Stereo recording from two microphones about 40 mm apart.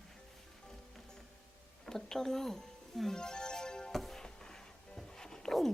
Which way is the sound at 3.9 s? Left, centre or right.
Centre.